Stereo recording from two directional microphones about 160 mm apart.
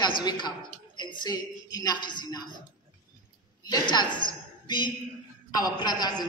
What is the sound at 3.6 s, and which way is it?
A woman's voice, 25° left (ahead or behind).